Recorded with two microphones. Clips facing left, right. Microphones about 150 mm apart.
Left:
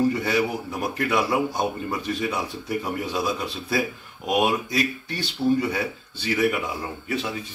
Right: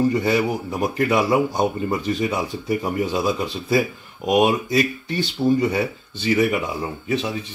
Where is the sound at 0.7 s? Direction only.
20° right (ahead or behind).